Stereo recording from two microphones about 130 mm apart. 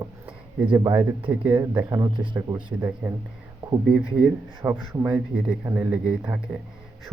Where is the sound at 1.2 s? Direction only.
15° right (ahead or behind).